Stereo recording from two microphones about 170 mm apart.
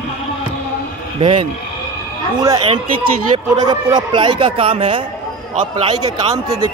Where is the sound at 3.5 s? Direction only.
25° right (ahead or behind).